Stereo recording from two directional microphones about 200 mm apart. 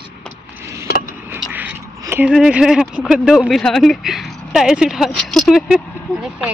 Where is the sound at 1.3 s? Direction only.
10° right (ahead or behind).